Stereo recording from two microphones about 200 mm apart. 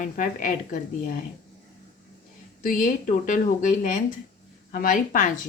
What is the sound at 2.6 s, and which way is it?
A woman's voice, 40° left (ahead or behind).